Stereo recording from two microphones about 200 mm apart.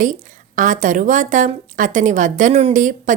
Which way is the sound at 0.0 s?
40° right (ahead or behind).